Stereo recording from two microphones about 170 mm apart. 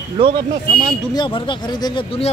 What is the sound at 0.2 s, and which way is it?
Speech, 30° right (ahead or behind).